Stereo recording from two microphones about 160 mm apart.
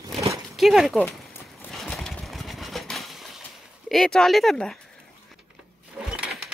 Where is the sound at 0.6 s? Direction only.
Centre (ahead or behind).